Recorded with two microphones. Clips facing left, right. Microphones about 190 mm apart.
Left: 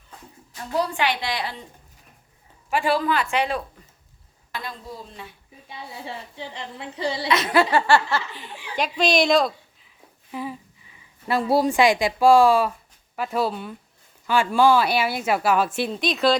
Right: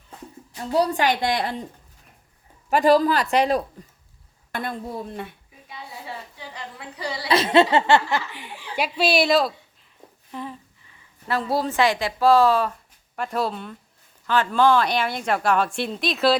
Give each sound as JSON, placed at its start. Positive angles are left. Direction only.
{"t": 0.5, "sound": "a woman's voice", "side_deg": -35}
{"t": 2.6, "sound": "speech", "side_deg": -40}
{"t": 4.5, "sound": "speech", "side_deg": -55}
{"t": 5.6, "sound": "speech", "side_deg": 25}
{"t": 7.3, "sound": "a woman's voice", "side_deg": -30}
{"t": 10.3, "sound": "a woman's voice", "side_deg": 5}